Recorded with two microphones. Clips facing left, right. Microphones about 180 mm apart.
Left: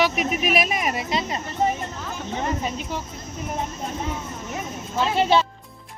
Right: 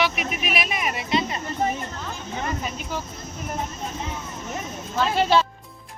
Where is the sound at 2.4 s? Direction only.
30° left (ahead or behind).